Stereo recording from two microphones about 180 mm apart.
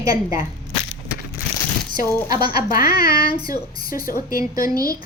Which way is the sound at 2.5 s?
55° left (ahead or behind).